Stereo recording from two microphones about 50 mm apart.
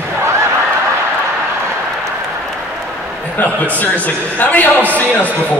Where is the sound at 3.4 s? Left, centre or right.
Left.